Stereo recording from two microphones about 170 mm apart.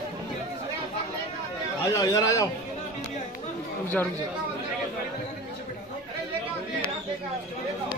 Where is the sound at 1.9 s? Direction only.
20° left (ahead or behind).